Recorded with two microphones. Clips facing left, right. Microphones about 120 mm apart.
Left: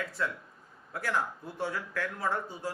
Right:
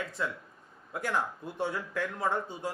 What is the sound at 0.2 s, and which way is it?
A man's voice, 20° right (ahead or behind).